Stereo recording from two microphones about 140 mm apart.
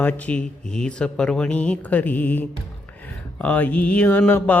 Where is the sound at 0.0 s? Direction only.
10° left (ahead or behind).